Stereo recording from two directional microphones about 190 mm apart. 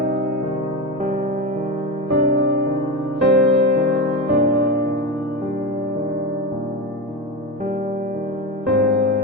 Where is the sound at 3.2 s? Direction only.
65° right (ahead or behind).